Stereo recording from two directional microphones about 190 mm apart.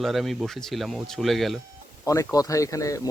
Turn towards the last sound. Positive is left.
turn(degrees=15)  # may be behind; listen again after turning